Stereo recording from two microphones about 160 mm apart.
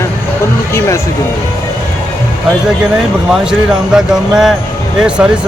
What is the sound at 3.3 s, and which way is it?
Speech, 5° right (ahead or behind).